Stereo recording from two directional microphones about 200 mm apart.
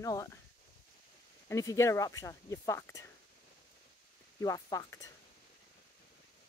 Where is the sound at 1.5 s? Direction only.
15° left (ahead or behind).